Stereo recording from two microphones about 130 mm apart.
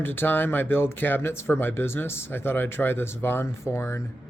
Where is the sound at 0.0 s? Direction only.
15° left (ahead or behind).